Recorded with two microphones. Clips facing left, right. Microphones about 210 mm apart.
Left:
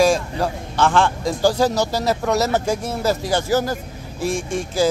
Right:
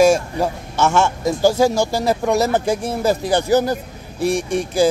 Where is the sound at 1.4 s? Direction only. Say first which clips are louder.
Right 2 dB; 10° right (ahead or behind).